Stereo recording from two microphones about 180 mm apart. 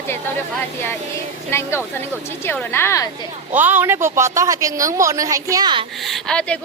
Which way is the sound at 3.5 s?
10° right (ahead or behind).